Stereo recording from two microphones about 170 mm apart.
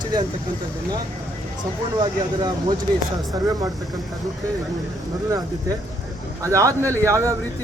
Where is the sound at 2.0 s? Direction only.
25° right (ahead or behind).